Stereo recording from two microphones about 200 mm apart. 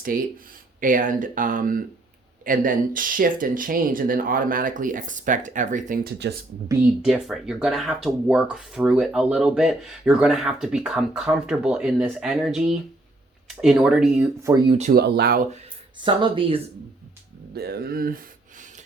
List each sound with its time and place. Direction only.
0.0 s speech: 45° right (ahead or behind)
7.0 s speech: centre (ahead or behind)
14.9 s speech: 50° right (ahead or behind)
16.0 s speech: 25° right (ahead or behind)
17.5 s speech: 50° right (ahead or behind)